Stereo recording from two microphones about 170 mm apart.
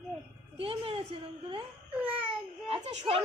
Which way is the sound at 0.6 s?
35° right (ahead or behind).